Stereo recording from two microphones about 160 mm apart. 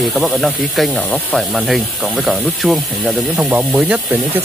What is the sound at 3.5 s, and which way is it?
Speech, 10° right (ahead or behind).